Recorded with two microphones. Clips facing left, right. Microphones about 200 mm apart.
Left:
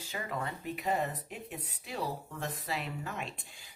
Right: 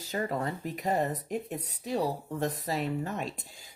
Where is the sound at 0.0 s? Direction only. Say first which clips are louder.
Right 6 dB; 40° right (ahead or behind).